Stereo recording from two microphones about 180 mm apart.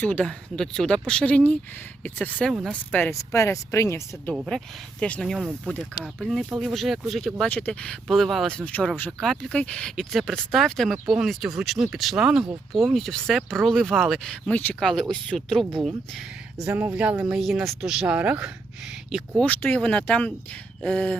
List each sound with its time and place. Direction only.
0.0 s speech: 5° left (ahead or behind)
4.4 s speech: centre (ahead or behind)
16.6 s speech: 10° right (ahead or behind); by 21.2 s 10° left (ahead or behind)